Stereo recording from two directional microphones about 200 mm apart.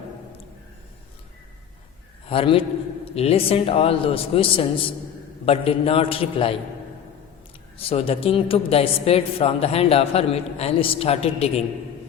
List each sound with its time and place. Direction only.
2.3 s a man's voice: 25° left (ahead or behind)
7.8 s a man's voice: 30° left (ahead or behind)